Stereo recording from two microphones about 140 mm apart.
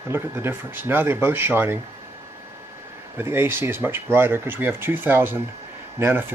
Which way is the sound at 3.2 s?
15° right (ahead or behind).